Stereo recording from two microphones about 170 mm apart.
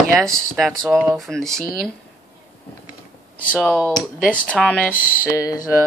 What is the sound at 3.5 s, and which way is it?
Speech, centre (ahead or behind).